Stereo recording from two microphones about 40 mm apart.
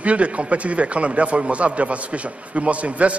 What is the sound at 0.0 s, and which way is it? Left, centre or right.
A man's voice, right.